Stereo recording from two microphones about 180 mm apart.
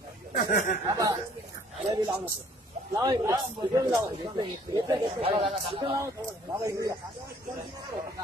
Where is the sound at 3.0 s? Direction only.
20° right (ahead or behind).